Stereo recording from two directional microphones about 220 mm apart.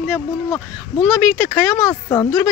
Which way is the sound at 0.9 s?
15° left (ahead or behind).